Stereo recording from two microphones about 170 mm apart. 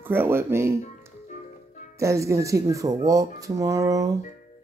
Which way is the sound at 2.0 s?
15° right (ahead or behind).